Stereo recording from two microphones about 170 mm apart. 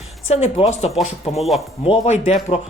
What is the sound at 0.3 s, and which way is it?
Speech, 40° left (ahead or behind).